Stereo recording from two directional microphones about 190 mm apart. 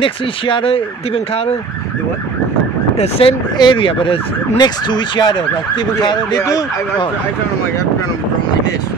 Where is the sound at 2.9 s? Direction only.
35° left (ahead or behind).